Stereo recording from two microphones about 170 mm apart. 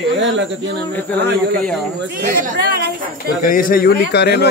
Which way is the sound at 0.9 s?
10° left (ahead or behind).